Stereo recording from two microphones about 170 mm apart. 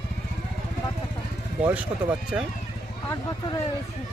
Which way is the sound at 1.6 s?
10° right (ahead or behind).